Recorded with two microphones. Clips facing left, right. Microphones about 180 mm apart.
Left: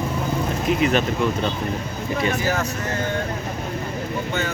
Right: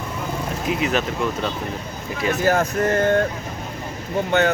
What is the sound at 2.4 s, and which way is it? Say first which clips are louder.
Speech: right 5 dB; 55° right (ahead or behind).